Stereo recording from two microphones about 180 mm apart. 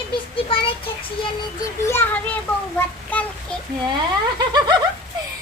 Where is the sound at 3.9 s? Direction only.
25° right (ahead or behind).